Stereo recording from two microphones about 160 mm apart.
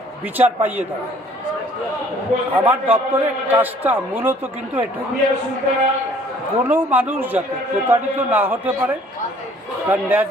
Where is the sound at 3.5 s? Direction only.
10° right (ahead or behind).